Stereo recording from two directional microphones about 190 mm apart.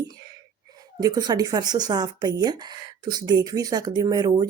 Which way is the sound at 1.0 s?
20° right (ahead or behind).